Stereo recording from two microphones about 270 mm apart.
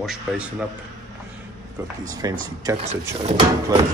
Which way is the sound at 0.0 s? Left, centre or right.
Centre.